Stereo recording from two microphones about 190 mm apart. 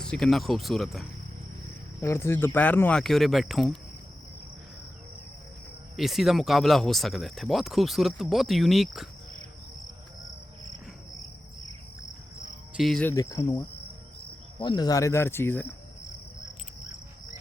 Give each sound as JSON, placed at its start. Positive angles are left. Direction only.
{"t": 0.0, "sound": "speech", "side_deg": 5}
{"t": 2.0, "sound": "speech", "side_deg": 15}
{"t": 6.0, "sound": "speech", "side_deg": 0}
{"t": 12.7, "sound": "cricket", "side_deg": 0}
{"t": 13.1, "sound": "speech", "side_deg": 20}